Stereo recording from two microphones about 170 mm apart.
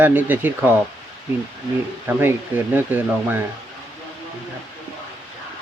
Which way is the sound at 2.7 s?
10° right (ahead or behind).